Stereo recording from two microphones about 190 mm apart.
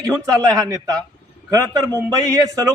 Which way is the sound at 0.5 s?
20° right (ahead or behind).